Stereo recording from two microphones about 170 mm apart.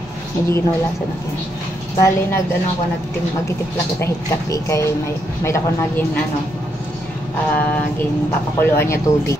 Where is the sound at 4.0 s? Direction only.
15° left (ahead or behind).